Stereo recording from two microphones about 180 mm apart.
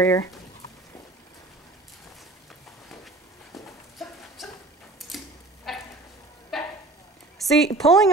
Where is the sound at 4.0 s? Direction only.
Centre (ahead or behind).